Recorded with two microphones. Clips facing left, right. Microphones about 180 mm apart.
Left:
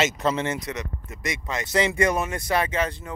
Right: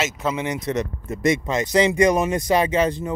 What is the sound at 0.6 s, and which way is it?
Speech, 25° right (ahead or behind).